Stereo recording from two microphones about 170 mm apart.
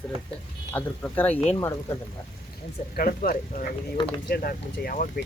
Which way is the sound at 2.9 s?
55° left (ahead or behind).